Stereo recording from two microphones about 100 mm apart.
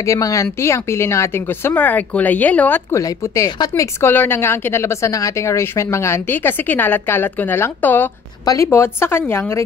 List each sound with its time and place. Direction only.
0.0 s speech: 35° left (ahead or behind); by 2.8 s 15° left (ahead or behind)
2.9 s speech: 35° left (ahead or behind)